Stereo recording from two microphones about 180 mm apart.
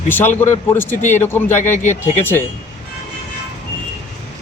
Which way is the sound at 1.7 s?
40° left (ahead or behind).